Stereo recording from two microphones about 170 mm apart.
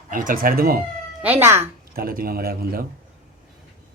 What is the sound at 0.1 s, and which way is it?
Speech, 55° right (ahead or behind).